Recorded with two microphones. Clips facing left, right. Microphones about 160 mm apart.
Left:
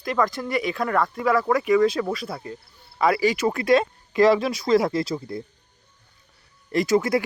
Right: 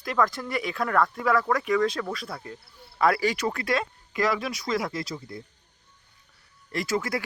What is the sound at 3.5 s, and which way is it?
Speech, 20° left (ahead or behind).